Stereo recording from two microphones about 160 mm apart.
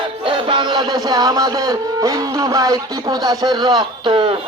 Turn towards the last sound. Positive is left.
turn(degrees=-30)  # may be behind; listen again after turning